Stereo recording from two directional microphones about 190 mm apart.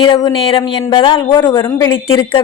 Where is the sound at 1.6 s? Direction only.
15° left (ahead or behind).